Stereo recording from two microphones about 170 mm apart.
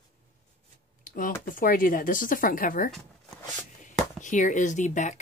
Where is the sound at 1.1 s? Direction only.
55° left (ahead or behind).